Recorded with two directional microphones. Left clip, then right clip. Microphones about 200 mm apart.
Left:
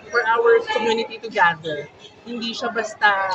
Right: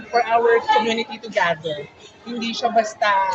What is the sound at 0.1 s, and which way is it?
A man's voice, 15° left (ahead or behind).